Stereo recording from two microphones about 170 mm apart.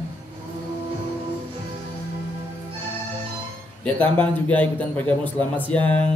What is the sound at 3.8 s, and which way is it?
A man's voice, 10° left (ahead or behind).